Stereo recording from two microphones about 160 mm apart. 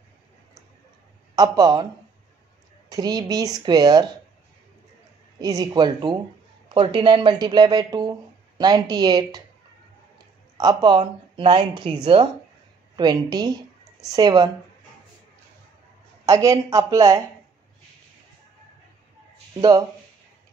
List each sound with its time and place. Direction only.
1.3 s speech: 25° right (ahead or behind)
2.9 s speech: 25° right (ahead or behind)
5.4 s speech: 20° right (ahead or behind)
10.6 s speech: 25° right (ahead or behind)
16.3 s speech: 20° right (ahead or behind)